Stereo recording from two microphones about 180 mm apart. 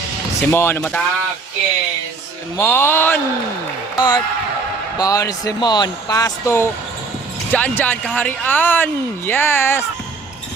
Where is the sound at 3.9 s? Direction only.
25° left (ahead or behind).